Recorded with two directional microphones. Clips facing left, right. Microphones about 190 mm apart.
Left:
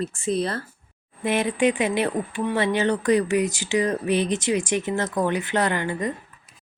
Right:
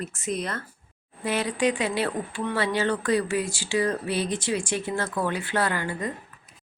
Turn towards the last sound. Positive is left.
turn(degrees=20)  # may be behind; listen again after turning